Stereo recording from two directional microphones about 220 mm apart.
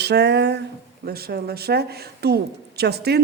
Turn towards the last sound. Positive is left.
turn(degrees=-45)  # may be behind; listen again after turning